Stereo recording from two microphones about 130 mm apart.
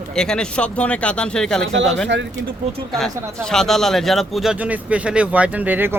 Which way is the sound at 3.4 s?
5° left (ahead or behind).